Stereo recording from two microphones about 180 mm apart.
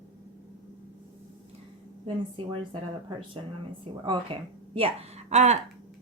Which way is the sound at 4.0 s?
30° right (ahead or behind).